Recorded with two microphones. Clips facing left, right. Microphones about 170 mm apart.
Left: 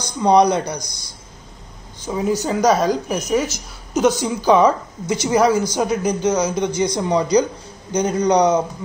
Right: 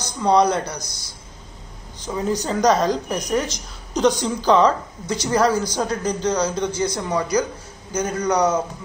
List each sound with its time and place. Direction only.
0.2 s speech: 15° left (ahead or behind)
2.0 s a woman's voice: 10° left (ahead or behind)